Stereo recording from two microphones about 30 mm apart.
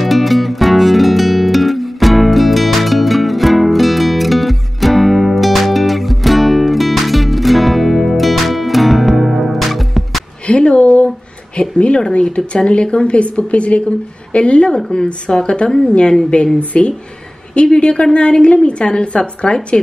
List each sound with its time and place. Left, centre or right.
0.0 s music: centre
10.4 s a sound: left
12.1 s a woman's voice: left
16.5 s speech: left
17.7 s a woman's voice: left